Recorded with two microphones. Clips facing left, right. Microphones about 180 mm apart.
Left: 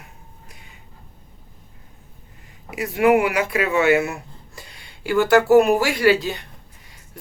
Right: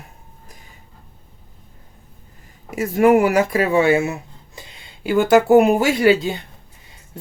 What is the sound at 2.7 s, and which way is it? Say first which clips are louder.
Speech: right 3 dB; 40° right (ahead or behind).